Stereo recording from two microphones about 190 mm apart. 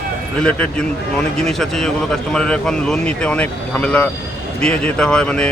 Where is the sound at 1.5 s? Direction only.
Centre (ahead or behind).